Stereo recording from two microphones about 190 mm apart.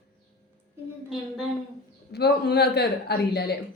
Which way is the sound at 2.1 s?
60° left (ahead or behind).